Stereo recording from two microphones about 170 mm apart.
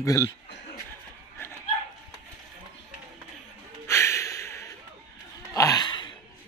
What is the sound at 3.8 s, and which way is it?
Snort, 15° left (ahead or behind).